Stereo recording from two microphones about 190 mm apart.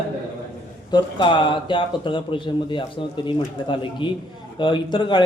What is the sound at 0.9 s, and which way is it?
A man's voice, 25° left (ahead or behind).